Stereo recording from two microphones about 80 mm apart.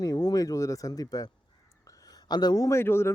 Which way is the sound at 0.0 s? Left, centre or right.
Left.